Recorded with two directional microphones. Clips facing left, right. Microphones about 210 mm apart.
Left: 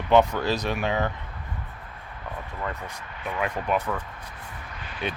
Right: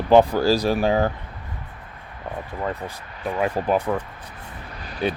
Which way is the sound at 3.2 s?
35° right (ahead or behind).